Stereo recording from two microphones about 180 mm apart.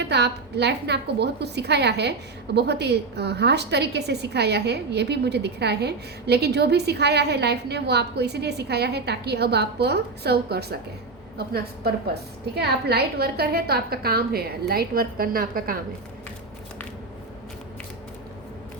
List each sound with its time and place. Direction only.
0.0 s a woman's voice: 70° right (ahead or behind); by 15.8 s 55° right (ahead or behind)